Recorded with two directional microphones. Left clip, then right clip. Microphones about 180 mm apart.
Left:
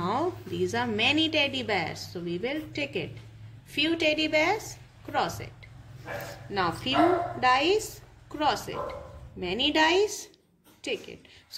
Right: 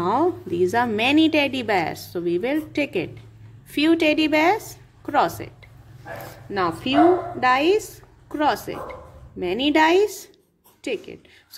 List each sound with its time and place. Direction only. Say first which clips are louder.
0.0 s a woman's voice: right 8 dB; 45° right (ahead or behind)
6.5 s a woman's voice: right 5 dB; 45° right (ahead or behind)